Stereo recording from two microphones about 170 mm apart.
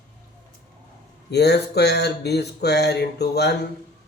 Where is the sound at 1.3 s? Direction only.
75° left (ahead or behind).